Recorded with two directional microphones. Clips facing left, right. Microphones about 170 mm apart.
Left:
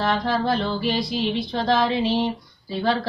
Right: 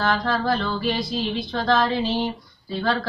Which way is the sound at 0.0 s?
30° left (ahead or behind).